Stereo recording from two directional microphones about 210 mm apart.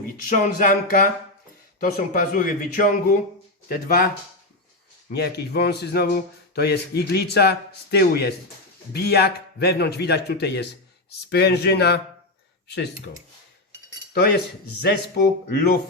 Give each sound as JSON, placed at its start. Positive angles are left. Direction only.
{"t": 0.3, "sound": "speech", "side_deg": 40}
{"t": 5.1, "sound": "speech", "side_deg": 50}
{"t": 14.1, "sound": "speech", "side_deg": 50}